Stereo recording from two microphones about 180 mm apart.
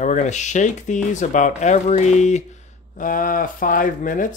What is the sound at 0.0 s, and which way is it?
Speech, 40° left (ahead or behind).